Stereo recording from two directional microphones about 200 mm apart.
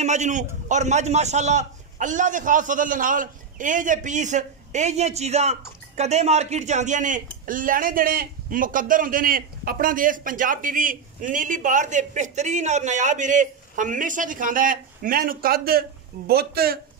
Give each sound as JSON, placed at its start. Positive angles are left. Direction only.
{"t": 0.0, "sound": "a man's voice", "side_deg": -35}